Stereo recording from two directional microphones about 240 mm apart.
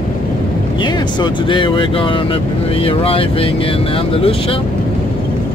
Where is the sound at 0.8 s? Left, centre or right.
Centre.